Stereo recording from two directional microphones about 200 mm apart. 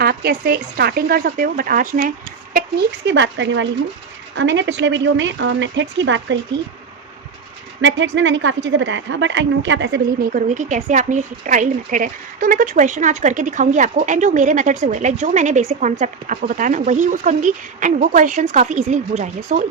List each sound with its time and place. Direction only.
0.0 s a woman's voice: 50° right (ahead or behind)
7.8 s a woman's voice: 70° right (ahead or behind)
10.3 s a woman's voice: 40° right (ahead or behind)